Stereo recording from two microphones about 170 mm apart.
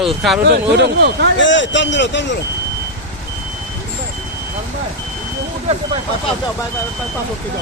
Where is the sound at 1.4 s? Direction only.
90° left.